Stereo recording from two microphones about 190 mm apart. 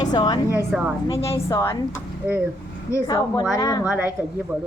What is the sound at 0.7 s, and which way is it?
Speech, 5° right (ahead or behind).